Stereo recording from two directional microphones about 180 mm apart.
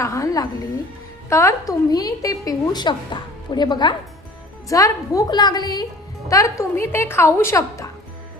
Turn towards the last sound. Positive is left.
turn(degrees=15)  # may be behind; listen again after turning